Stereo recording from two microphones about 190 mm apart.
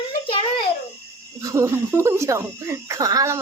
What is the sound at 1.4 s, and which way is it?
Speech, 15° right (ahead or behind).